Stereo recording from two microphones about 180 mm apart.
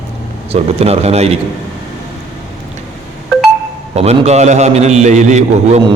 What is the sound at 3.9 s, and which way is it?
A man's voice, 35° right (ahead or behind).